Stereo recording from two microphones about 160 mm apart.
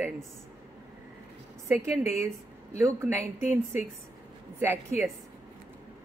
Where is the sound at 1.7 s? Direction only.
15° right (ahead or behind).